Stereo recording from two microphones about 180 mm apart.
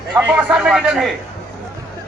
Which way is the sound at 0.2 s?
5° right (ahead or behind).